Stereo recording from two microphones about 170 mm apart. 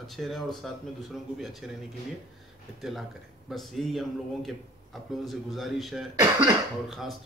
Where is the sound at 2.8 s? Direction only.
Centre (ahead or behind).